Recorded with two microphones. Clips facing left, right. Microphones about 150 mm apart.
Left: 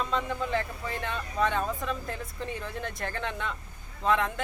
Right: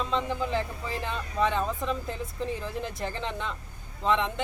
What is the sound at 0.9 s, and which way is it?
Speech, centre (ahead or behind).